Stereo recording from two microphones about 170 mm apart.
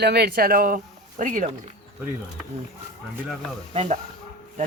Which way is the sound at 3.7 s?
40° right (ahead or behind).